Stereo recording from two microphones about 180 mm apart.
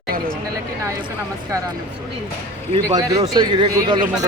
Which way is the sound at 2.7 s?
25° right (ahead or behind).